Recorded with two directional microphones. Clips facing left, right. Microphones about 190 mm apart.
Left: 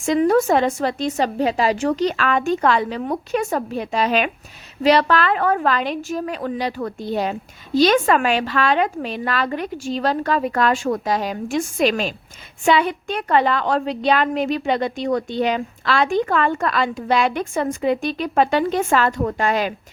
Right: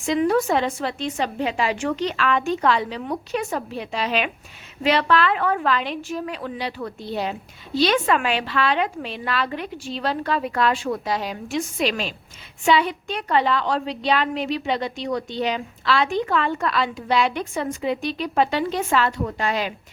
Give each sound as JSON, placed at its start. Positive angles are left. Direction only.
{"t": 0.0, "sound": "a woman's voice", "side_deg": 45}